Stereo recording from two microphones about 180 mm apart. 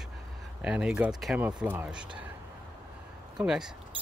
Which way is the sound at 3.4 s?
5° right (ahead or behind).